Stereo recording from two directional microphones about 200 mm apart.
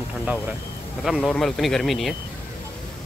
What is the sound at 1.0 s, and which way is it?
Speech, centre (ahead or behind).